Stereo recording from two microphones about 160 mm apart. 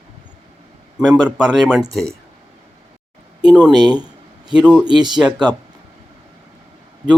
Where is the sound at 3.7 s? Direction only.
25° right (ahead or behind).